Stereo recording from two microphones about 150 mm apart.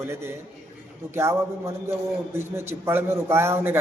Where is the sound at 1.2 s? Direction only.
20° right (ahead or behind).